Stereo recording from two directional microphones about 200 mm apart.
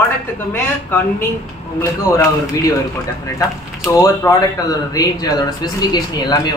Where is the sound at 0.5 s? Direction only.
10° left (ahead or behind).